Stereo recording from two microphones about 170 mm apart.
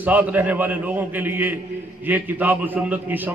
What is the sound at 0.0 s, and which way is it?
A man's voice, 10° right (ahead or behind).